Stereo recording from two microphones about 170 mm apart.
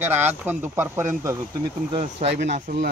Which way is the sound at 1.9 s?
35° right (ahead or behind).